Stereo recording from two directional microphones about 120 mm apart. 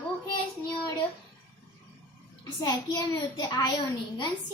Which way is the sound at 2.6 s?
30° left (ahead or behind).